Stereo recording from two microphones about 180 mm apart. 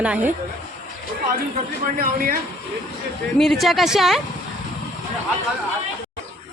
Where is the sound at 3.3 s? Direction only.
Centre (ahead or behind).